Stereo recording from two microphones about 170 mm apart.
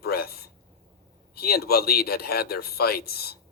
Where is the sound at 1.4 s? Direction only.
65° left (ahead or behind).